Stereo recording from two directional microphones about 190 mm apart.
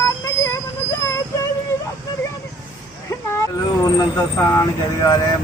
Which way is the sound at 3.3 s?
15° left (ahead or behind).